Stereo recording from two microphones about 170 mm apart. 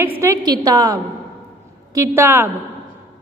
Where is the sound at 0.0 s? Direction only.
15° right (ahead or behind).